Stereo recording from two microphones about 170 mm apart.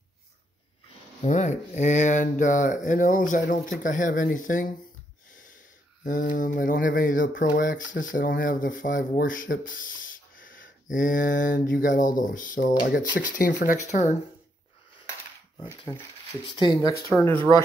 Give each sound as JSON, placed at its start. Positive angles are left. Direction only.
{"t": 1.2, "sound": "speech", "side_deg": 45}
{"t": 6.0, "sound": "speech", "side_deg": 50}
{"t": 15.6, "sound": "speech", "side_deg": 25}
{"t": 17.3, "sound": "speech", "side_deg": -30}